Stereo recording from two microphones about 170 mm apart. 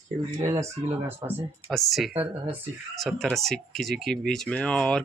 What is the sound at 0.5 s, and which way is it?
Speech, 10° right (ahead or behind).